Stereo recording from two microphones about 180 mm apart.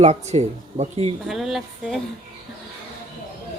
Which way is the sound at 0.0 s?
40° right (ahead or behind).